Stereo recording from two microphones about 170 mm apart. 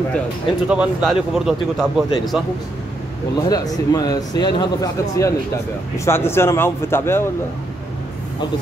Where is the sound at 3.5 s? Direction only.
20° left (ahead or behind).